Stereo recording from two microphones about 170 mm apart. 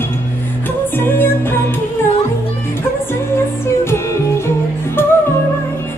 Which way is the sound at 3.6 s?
15° left (ahead or behind).